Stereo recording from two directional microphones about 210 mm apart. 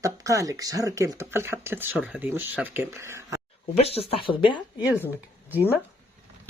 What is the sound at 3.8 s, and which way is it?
Speech, 30° left (ahead or behind).